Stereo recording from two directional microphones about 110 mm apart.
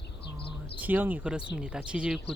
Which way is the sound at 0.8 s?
15° right (ahead or behind).